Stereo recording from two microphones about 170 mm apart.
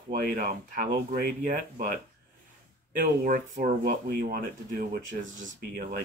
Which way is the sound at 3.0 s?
55° right (ahead or behind).